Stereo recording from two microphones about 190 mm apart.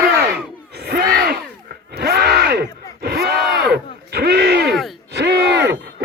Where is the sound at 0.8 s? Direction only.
55° right (ahead or behind).